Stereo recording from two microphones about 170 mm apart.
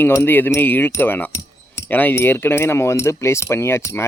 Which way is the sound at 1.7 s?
10° left (ahead or behind).